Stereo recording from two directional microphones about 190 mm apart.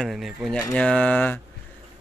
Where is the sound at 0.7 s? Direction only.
5° left (ahead or behind).